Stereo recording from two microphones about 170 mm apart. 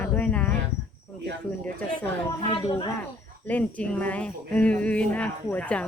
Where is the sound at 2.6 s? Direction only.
30° left (ahead or behind).